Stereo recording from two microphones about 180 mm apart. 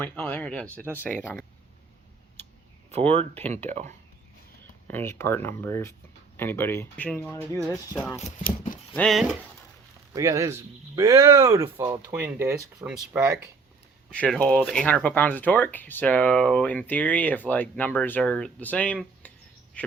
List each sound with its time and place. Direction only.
0.0 s speech: 10° left (ahead or behind)
2.9 s speech: 35° right (ahead or behind)
4.9 s speech: 10° left (ahead or behind)
7.6 s speech: centre (ahead or behind)
10.1 s speech: 15° right (ahead or behind)
14.1 s speech: 5° left (ahead or behind)